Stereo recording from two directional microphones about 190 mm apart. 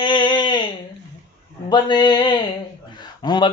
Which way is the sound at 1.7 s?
25° left (ahead or behind).